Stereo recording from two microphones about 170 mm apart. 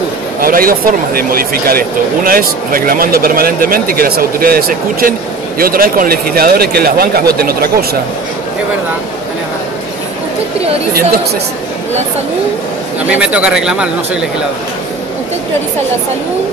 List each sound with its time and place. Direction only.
0.4 s speech: 55° right (ahead or behind)
10.9 s speech: 60° right (ahead or behind)
13.1 s speech: 5° right (ahead or behind)